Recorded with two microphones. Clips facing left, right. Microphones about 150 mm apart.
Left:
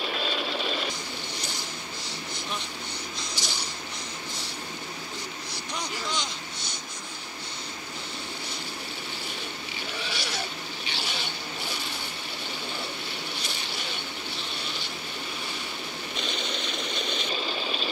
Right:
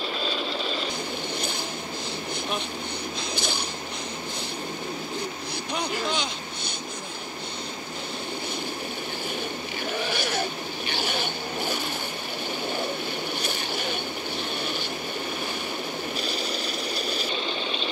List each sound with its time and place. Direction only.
0.2 s a sound: centre (ahead or behind)
3.3 s a sound: 55° right (ahead or behind)
5.8 s vehicle: 60° right (ahead or behind)
9.9 s zipper: 55° right (ahead or behind)
10.9 s vehicle: 55° right (ahead or behind)
13.4 s vehicle: 55° right (ahead or behind)
16.2 s engine: 5° right (ahead or behind)